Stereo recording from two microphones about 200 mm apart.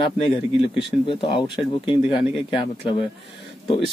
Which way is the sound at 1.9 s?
25° left (ahead or behind).